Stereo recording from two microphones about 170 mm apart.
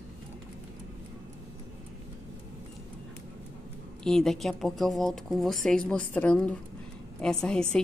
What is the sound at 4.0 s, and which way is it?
A woman's voice, 5° left (ahead or behind).